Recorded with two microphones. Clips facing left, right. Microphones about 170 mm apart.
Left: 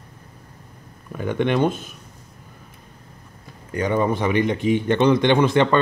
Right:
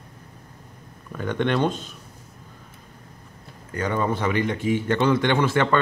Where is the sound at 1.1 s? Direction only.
10° left (ahead or behind).